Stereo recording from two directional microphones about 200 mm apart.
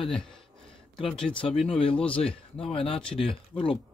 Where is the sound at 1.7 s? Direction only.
25° left (ahead or behind).